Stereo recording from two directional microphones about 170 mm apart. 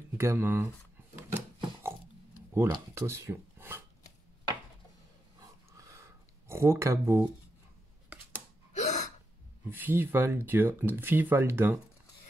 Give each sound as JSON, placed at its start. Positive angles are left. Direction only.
{"t": 0.2, "sound": "speech", "side_deg": -15}
{"t": 1.1, "sound": "a sound", "side_deg": -15}
{"t": 2.5, "sound": "speech", "side_deg": -15}
{"t": 5.7, "sound": "a sound", "side_deg": -20}
{"t": 8.7, "sound": "gasp", "side_deg": 45}
{"t": 9.7, "sound": "speech", "side_deg": -10}